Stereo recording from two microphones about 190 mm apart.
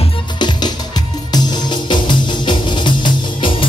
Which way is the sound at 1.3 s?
20° left (ahead or behind).